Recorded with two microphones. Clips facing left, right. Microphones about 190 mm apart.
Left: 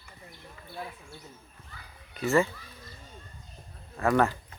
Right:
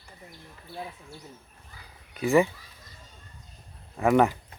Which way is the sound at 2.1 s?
15° right (ahead or behind).